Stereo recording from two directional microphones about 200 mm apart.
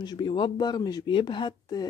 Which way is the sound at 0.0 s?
20° left (ahead or behind).